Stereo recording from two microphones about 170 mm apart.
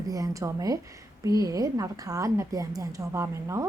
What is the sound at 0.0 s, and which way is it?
A woman's voice, 20° right (ahead or behind).